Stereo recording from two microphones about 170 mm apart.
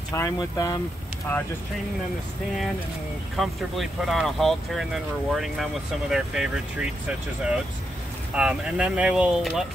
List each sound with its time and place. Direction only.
0.1 s speech: 20° left (ahead or behind)
3.3 s speech: centre (ahead or behind)